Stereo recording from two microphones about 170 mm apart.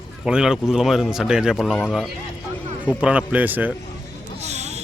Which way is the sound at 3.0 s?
10° right (ahead or behind).